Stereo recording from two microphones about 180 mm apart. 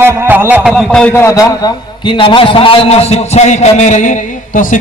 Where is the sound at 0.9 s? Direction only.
5° left (ahead or behind).